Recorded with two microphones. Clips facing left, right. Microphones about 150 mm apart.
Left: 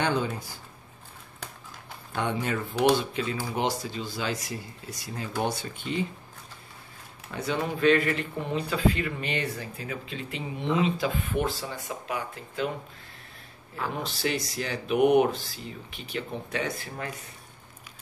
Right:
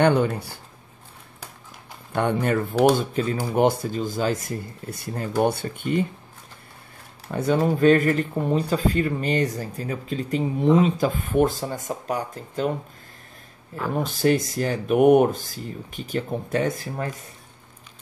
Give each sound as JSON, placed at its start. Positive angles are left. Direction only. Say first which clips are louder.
{"t": 0.0, "sound": "speech", "louder": "right 8 dB", "side_deg": -60}
{"t": 2.1, "sound": "speech", "louder": "right 7 dB", "side_deg": -55}
{"t": 7.2, "sound": "speech", "louder": "right 8 dB", "side_deg": -45}
{"t": 14.0, "sound": "speech", "louder": "right 9 dB", "side_deg": -50}